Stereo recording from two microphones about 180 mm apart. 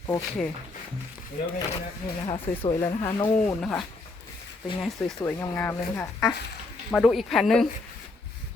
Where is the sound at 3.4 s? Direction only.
5° left (ahead or behind).